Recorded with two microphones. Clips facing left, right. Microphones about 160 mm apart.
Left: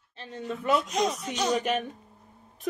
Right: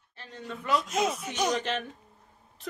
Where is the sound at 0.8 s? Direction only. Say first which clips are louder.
Left 1 dB; 5° right (ahead or behind).